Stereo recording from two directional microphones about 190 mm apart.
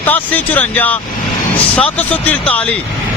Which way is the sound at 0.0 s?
10° left (ahead or behind).